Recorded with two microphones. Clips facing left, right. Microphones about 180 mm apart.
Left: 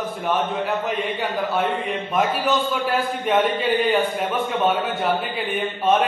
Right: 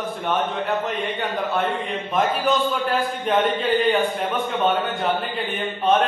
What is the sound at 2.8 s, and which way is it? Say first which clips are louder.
A man's voice: left 1 dB; 5° left (ahead or behind).